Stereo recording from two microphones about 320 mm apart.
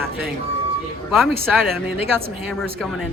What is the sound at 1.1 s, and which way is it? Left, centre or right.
Speech, centre.